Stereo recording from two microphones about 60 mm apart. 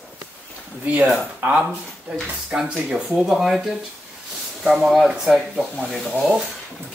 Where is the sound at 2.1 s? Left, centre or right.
Centre.